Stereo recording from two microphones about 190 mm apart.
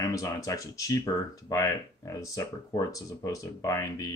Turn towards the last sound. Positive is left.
turn(degrees=20)  # may be behind; listen again after turning